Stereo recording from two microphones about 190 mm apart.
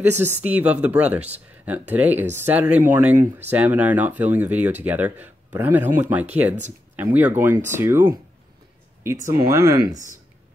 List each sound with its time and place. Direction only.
0.0 s speech: 10° right (ahead or behind)